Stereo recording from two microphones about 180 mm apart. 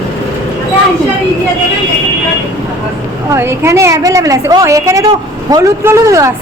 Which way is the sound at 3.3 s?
15° right (ahead or behind).